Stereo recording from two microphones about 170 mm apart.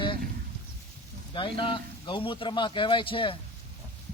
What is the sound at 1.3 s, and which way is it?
A man's voice, 30° left (ahead or behind).